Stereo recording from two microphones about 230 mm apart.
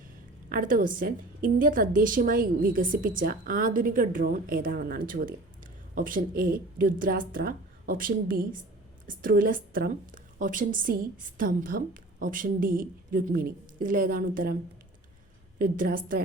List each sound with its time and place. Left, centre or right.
0.5 s a woman's voice: right
15.5 s a woman's voice: right